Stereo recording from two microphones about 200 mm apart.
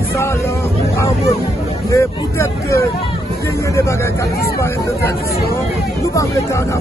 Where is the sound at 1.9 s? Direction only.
15° left (ahead or behind).